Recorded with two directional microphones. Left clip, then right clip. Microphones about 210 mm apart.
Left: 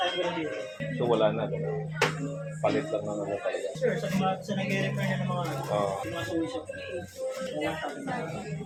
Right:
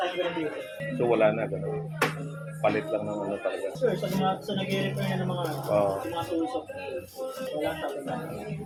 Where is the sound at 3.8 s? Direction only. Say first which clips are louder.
Right 2 dB; 5° left (ahead or behind).